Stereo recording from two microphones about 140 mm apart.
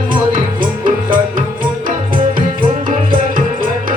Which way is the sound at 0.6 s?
80° right.